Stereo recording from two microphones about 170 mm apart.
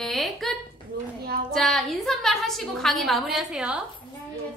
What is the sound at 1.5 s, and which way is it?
A woman's voice, centre (ahead or behind).